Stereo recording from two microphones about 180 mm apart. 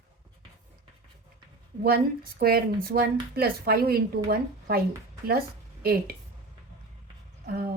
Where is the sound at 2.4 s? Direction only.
60° right (ahead or behind).